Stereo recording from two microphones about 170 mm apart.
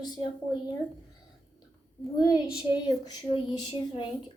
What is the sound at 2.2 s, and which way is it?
Speech, 25° left (ahead or behind).